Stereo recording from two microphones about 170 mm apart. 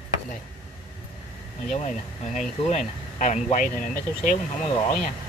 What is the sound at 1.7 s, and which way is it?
Speech, 45° left (ahead or behind).